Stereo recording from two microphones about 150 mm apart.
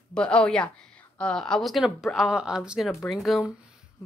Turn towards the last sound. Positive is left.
turn(degrees=0)  # may be behind; listen again after turning